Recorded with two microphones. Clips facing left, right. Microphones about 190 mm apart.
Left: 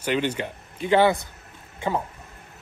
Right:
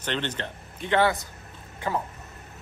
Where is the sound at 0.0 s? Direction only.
10° left (ahead or behind).